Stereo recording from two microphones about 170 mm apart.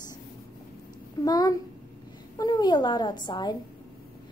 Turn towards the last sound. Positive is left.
turn(degrees=25)  # may be behind; listen again after turning